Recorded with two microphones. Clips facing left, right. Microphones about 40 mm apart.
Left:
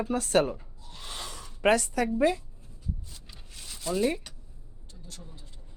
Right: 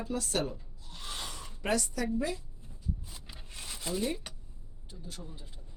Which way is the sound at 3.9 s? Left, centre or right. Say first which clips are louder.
Left 6 dB; left.